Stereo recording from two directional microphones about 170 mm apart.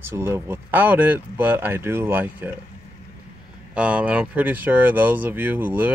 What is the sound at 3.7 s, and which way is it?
Speech, 5° right (ahead or behind).